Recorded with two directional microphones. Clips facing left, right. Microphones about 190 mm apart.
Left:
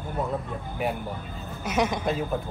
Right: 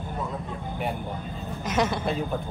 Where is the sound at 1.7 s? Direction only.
10° left (ahead or behind).